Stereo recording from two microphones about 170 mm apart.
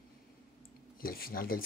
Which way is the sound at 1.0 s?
60° left (ahead or behind).